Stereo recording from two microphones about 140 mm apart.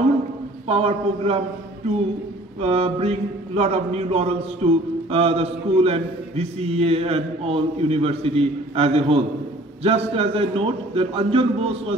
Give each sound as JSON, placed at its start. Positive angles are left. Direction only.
{"t": 0.7, "sound": "a man's voice", "side_deg": -45}
{"t": 2.6, "sound": "a man's voice", "side_deg": -45}